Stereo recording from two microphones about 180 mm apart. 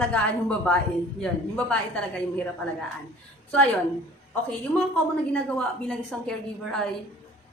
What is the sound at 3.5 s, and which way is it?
Speech, 10° left (ahead or behind).